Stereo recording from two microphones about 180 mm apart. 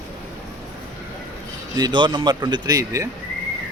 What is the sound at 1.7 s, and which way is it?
Speech, 25° right (ahead or behind).